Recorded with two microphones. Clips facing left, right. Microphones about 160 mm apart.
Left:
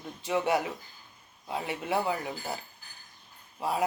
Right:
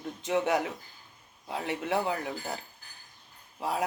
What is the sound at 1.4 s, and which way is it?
Speech, 5° left (ahead or behind).